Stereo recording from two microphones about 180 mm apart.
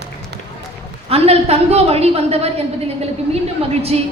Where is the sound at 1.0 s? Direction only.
35° right (ahead or behind).